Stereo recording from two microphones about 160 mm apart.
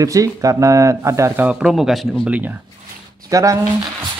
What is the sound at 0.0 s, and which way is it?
Speech, 20° right (ahead or behind).